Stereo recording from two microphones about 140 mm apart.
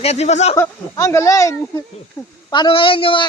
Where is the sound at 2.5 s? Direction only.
35° left (ahead or behind).